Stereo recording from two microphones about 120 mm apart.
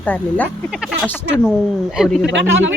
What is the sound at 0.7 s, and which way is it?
Speech, 5° right (ahead or behind).